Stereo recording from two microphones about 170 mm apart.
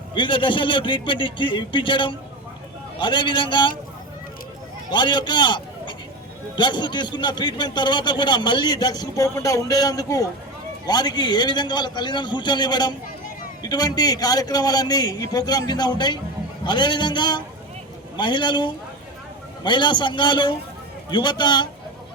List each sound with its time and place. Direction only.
0.1 s a man's voice: 30° left (ahead or behind)
4.9 s a man's voice: 25° left (ahead or behind)